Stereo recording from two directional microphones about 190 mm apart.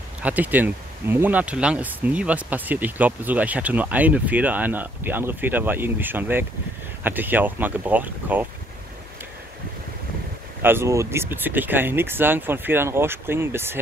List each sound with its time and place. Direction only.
0.2 s speech: 10° right (ahead or behind)
10.6 s speech: 10° right (ahead or behind)